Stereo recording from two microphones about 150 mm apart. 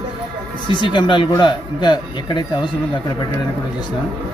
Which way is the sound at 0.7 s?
30° left (ahead or behind).